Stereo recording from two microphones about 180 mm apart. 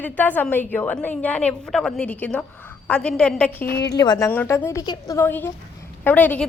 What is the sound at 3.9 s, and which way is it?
A woman's voice, 20° left (ahead or behind).